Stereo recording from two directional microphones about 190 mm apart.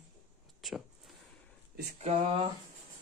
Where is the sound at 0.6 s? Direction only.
Centre (ahead or behind).